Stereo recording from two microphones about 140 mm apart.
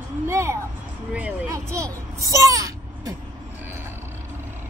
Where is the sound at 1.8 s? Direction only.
25° right (ahead or behind).